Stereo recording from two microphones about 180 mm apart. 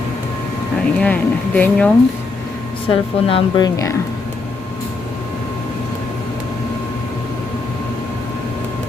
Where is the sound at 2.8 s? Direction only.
30° left (ahead or behind).